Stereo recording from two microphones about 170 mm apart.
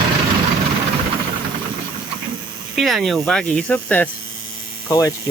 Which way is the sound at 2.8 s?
Centre (ahead or behind).